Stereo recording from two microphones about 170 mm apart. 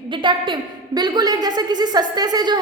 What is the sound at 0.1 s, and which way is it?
A woman's voice, 30° right (ahead or behind).